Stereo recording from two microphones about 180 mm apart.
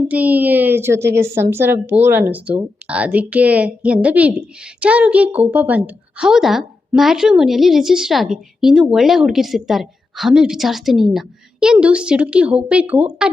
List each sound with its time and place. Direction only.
0.1 s a woman's voice: 10° right (ahead or behind)